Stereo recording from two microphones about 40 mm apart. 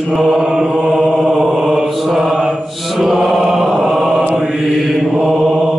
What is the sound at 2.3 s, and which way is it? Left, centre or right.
Mantra, right.